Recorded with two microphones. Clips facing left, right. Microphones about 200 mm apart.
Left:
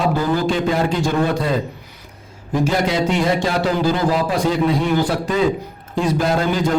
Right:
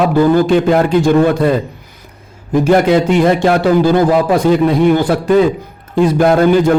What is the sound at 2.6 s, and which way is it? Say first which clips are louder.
A man's voice: right 9 dB; 55° right (ahead or behind).